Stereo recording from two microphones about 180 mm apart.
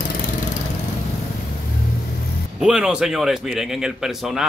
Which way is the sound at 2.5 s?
5° right (ahead or behind).